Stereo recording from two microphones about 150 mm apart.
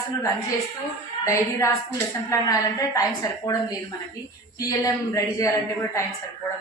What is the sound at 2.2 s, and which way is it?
Speech, 20° left (ahead or behind).